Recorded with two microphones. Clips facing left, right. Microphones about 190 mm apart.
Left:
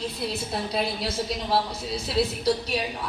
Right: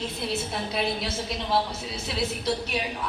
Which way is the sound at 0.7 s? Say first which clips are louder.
Even; 35° left (ahead or behind).